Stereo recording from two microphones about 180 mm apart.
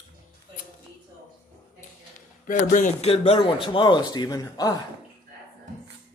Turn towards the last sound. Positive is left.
turn(degrees=20)  # may be behind; listen again after turning